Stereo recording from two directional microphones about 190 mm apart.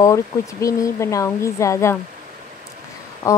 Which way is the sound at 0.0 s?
15° left (ahead or behind).